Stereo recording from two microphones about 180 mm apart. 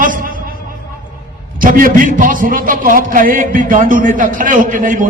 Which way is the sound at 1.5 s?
50° right (ahead or behind).